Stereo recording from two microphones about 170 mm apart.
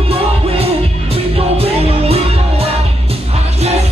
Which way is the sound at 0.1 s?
35° right (ahead or behind).